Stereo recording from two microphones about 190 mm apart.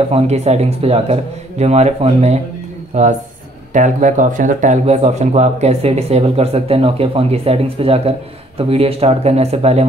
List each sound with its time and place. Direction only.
0.1 s speech: 35° right (ahead or behind)